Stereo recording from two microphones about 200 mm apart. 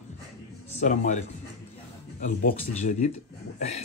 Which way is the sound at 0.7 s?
40° left (ahead or behind).